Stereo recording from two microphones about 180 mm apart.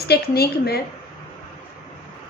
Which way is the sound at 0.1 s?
60° left (ahead or behind).